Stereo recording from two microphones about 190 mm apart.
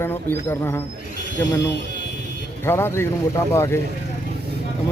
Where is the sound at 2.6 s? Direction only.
10° left (ahead or behind).